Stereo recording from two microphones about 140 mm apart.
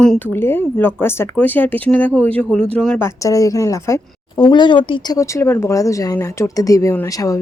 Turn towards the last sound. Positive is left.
turn(degrees=25)  # may be behind; listen again after turning